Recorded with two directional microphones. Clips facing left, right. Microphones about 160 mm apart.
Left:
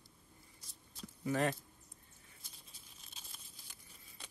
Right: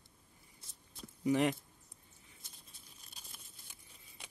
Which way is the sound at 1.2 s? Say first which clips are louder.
Right 4 dB; 15° right (ahead or behind).